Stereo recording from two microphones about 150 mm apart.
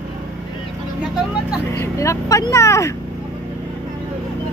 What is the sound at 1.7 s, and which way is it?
Speech, 20° left (ahead or behind).